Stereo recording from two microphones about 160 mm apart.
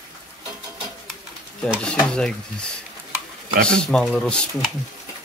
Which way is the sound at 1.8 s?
5° left (ahead or behind).